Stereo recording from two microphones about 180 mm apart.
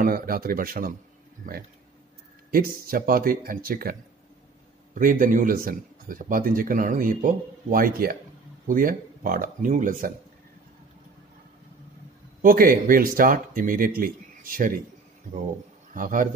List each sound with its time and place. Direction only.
0.0 s a man's voice: 55° right (ahead or behind)
2.5 s a man's voice: 55° right (ahead or behind)
4.9 s a man's voice: 50° right (ahead or behind)
12.4 s a man's voice: 50° right (ahead or behind)
15.9 s a man's voice: 50° right (ahead or behind)